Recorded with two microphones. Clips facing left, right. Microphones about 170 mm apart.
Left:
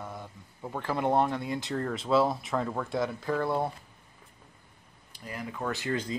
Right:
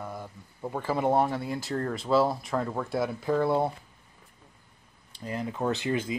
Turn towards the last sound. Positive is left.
turn(degrees=-20)  # may be behind; listen again after turning